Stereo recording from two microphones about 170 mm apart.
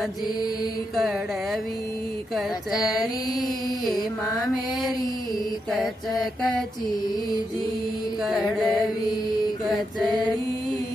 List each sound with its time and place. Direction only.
2.8 s mantra: 20° left (ahead or behind)
5.7 s mantra: centre (ahead or behind)
8.3 s mantra: centre (ahead or behind)